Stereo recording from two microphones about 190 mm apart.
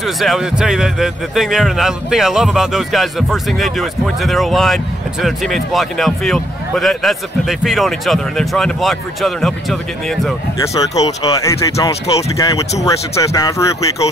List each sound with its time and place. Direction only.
0.0 s a man's voice: centre (ahead or behind)
10.7 s speech: 20° left (ahead or behind)